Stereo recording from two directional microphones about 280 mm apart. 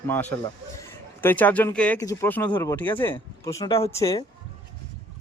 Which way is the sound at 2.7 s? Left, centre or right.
Centre.